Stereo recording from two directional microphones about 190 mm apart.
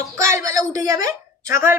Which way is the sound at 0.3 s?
15° right (ahead or behind).